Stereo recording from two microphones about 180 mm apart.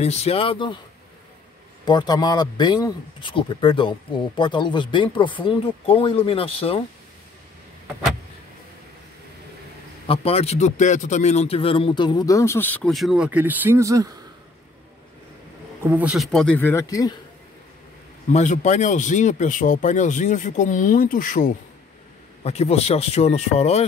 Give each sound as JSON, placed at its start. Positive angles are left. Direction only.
{"t": 0.0, "sound": "speech", "side_deg": 35}
{"t": 1.9, "sound": "speech", "side_deg": 25}
{"t": 10.0, "sound": "speech", "side_deg": 35}
{"t": 15.8, "sound": "speech", "side_deg": -10}
{"t": 18.3, "sound": "speech", "side_deg": 40}
{"t": 22.4, "sound": "speech", "side_deg": 35}